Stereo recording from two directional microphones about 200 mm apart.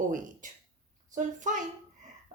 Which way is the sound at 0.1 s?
40° right (ahead or behind).